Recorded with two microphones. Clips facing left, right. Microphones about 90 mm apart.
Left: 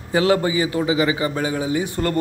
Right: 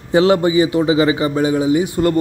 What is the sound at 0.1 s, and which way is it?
A man's voice, 25° right (ahead or behind).